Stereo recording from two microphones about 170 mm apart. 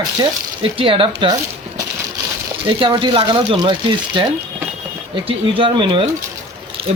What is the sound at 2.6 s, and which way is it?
Speech, 30° right (ahead or behind).